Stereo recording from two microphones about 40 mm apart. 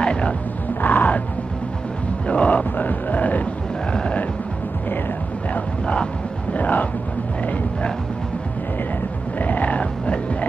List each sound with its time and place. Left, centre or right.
0.0 s music: left
0.7 s music: left
2.2 s a sound: left
5.5 s a sound: left
6.5 s music: left
9.4 s music: left